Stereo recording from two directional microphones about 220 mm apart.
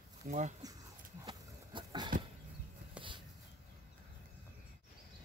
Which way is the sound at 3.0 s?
5° right (ahead or behind).